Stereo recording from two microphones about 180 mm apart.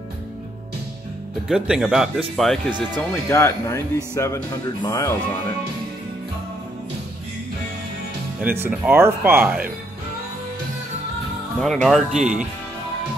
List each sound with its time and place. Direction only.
1.5 s speech: 5° right (ahead or behind)
3.0 s speech: 15° left (ahead or behind)
8.4 s speech: 10° right (ahead or behind)
11.6 s speech: centre (ahead or behind)